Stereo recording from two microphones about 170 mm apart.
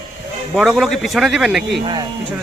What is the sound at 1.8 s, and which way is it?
Speech, 25° right (ahead or behind).